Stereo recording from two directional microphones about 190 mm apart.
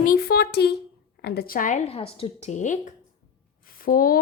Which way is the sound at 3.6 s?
50° left (ahead or behind).